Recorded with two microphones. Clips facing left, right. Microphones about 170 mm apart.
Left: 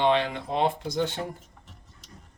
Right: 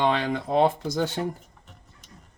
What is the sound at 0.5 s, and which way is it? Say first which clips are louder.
Speech: right 4 dB; 40° right (ahead or behind).